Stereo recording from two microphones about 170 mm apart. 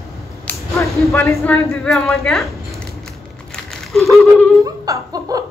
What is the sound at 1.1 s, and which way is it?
Speech, 15° left (ahead or behind).